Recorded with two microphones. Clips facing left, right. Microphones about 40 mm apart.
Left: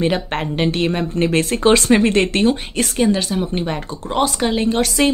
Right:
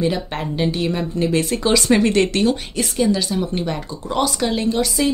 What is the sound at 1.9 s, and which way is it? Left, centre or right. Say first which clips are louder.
Speech: left 1 dB; left.